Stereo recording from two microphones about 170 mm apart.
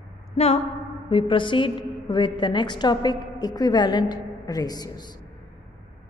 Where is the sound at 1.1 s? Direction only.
30° left (ahead or behind).